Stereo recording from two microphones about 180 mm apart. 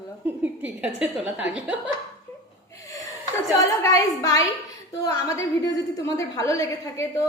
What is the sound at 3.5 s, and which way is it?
A woman's voice, 20° left (ahead or behind).